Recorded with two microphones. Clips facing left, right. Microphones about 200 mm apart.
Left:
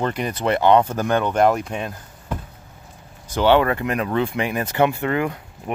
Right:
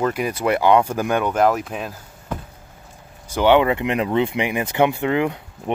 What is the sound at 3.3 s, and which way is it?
Speech, 15° right (ahead or behind).